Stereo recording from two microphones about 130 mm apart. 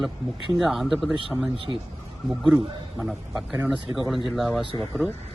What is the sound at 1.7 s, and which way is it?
Speech, 25° right (ahead or behind).